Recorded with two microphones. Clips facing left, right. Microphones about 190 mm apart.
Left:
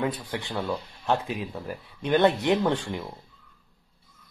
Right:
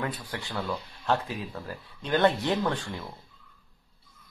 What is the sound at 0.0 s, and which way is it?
Speech, 20° left (ahead or behind).